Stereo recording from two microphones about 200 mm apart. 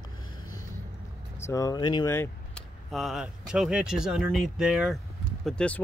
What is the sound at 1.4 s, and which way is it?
Speech, 15° left (ahead or behind).